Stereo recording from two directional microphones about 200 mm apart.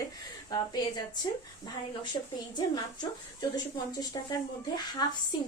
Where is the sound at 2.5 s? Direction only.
20° left (ahead or behind).